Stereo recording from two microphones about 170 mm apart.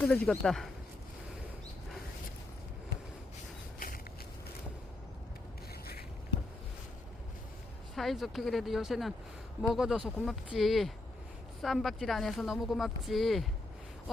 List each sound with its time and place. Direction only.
0.0 s speech: 10° left (ahead or behind)
3.8 s a sound: 55° left (ahead or behind)
7.9 s speech: centre (ahead or behind)